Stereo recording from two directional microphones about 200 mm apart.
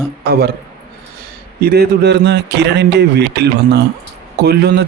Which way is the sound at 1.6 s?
50° right (ahead or behind).